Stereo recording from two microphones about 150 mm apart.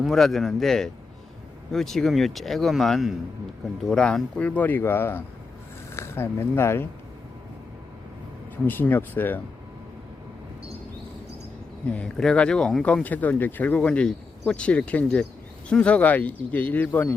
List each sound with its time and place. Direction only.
0.0 s speech: centre (ahead or behind)
8.6 s speech: 10° left (ahead or behind)
11.9 s speech: 5° left (ahead or behind)